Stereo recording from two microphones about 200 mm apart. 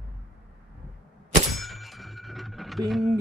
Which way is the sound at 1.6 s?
Centre (ahead or behind).